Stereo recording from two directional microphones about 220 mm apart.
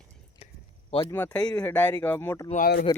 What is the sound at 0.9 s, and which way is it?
Speech, 20° left (ahead or behind).